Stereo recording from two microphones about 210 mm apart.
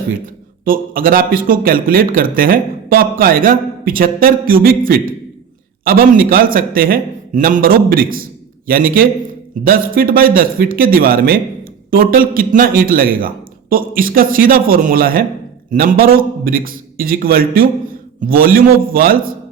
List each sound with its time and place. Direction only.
0.6 s a man's voice: 40° right (ahead or behind)